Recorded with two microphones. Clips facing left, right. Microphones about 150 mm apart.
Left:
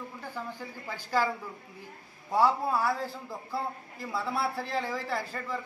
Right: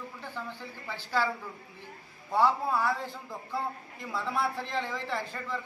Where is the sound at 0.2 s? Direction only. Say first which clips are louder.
Left 1 dB; 10° left (ahead or behind).